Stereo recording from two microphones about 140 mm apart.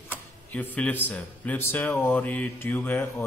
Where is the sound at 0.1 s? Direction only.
10° left (ahead or behind).